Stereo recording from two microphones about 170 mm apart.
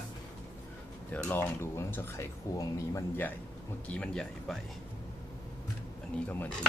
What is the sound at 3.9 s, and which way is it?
Speech, 5° left (ahead or behind).